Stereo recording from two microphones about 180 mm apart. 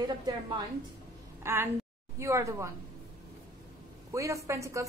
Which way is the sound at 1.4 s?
15° right (ahead or behind).